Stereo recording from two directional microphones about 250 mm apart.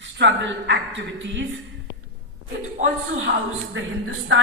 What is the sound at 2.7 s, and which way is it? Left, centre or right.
Speech, right.